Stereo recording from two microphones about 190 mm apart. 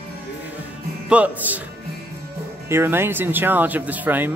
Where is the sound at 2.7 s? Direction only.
10° right (ahead or behind).